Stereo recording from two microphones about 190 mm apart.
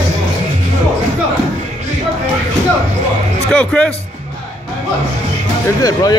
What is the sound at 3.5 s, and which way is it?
Music, 5° left (ahead or behind).